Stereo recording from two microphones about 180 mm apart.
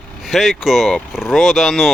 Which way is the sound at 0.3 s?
Centre (ahead or behind).